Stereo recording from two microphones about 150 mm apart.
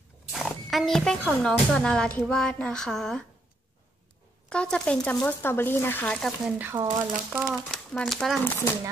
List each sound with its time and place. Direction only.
0.3 s speech: centre (ahead or behind)
4.5 s speech: 5° left (ahead or behind)
6.4 s speech: 15° right (ahead or behind)
7.4 s speech: centre (ahead or behind)
8.5 s speech: 15° left (ahead or behind)